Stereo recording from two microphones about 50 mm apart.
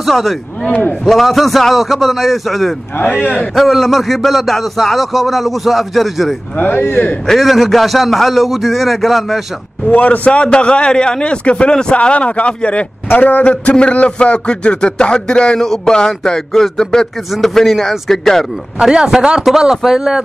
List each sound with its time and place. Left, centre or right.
0.0 s a man's voice: centre
3.1 s a man's voice: centre
3.5 s speech: centre
6.8 s a man's voice: left
7.2 s speech: centre
9.8 s a man's voice: left; by 18.4 s centre
18.8 s speech: centre